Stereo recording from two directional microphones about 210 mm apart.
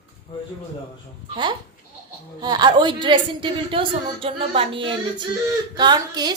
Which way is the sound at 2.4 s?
20° right (ahead or behind).